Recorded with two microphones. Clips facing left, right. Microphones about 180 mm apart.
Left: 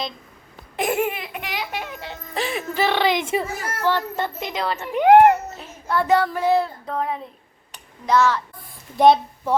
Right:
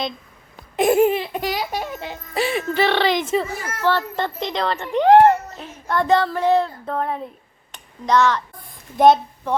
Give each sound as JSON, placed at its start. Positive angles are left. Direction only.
{"t": 0.8, "sound": "laughter", "side_deg": -30}
{"t": 2.3, "sound": "speech", "side_deg": -5}
{"t": 7.7, "sound": "a sound", "side_deg": 5}
{"t": 9.0, "sound": "a child's voice", "side_deg": 0}